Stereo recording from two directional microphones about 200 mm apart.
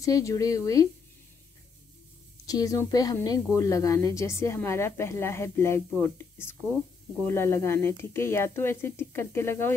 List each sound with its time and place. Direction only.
0.0 s speech: 15° left (ahead or behind)
2.4 s speech: 15° left (ahead or behind)